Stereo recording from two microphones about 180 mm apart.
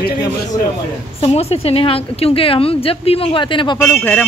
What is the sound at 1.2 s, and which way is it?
A woman's voice, 35° left (ahead or behind).